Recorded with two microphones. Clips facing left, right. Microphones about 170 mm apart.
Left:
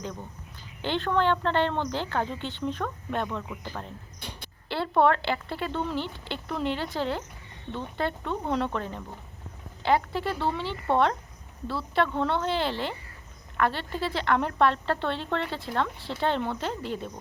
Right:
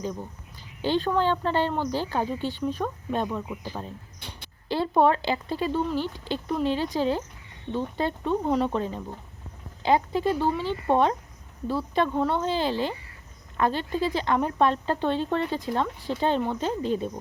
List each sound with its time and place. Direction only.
0.0 s speech: 10° right (ahead or behind)